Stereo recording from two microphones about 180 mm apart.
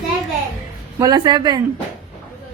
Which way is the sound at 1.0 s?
20° right (ahead or behind).